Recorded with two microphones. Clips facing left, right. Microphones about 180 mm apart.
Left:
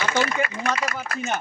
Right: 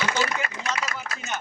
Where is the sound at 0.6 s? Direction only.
55° left (ahead or behind).